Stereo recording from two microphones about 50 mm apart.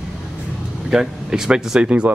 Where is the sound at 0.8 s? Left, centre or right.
Centre.